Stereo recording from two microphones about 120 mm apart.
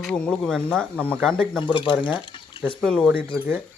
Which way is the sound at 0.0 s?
5° left (ahead or behind).